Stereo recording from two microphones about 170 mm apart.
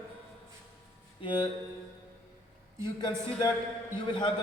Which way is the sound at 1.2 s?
30° left (ahead or behind).